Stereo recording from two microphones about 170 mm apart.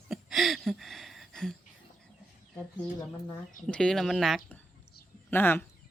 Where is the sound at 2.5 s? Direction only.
25° left (ahead or behind).